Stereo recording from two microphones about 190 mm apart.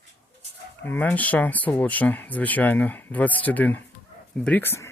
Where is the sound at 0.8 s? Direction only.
10° left (ahead or behind).